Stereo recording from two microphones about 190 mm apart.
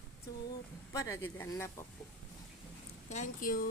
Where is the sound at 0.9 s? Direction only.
15° left (ahead or behind).